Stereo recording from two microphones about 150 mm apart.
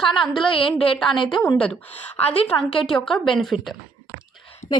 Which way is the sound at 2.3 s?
35° left (ahead or behind).